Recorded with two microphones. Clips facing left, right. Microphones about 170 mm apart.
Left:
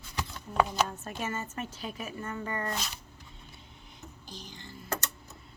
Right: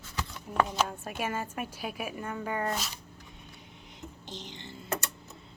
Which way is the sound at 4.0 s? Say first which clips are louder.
Right 4 dB; 20° right (ahead or behind).